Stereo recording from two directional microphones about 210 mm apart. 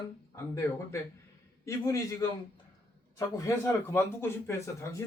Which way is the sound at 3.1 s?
15° left (ahead or behind).